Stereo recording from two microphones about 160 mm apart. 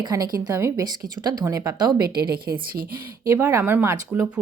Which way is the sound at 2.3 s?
70° right (ahead or behind).